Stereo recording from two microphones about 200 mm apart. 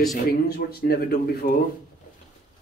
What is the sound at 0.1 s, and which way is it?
Speech, 45° left (ahead or behind).